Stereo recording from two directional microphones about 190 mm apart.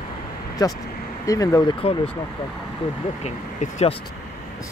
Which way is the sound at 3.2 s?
35° left (ahead or behind).